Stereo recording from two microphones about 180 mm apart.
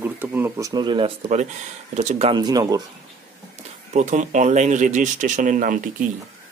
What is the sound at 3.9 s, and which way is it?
Speech, 40° right (ahead or behind).